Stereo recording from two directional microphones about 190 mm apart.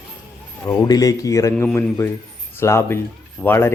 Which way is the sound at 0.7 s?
20° left (ahead or behind).